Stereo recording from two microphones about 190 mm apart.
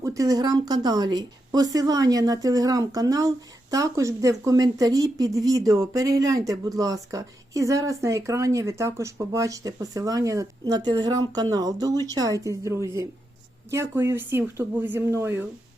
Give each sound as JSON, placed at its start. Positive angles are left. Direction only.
{"t": 0.0, "sound": "a woman's voice", "side_deg": -15}